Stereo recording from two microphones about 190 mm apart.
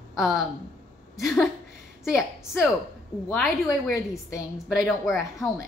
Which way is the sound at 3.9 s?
15° left (ahead or behind).